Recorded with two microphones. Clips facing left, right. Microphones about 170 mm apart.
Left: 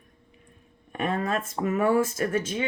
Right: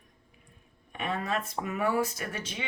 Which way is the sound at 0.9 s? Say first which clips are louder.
Left 5 dB; 50° left (ahead or behind).